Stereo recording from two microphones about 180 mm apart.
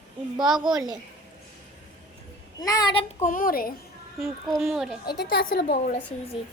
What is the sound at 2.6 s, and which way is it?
Speech, 25° left (ahead or behind).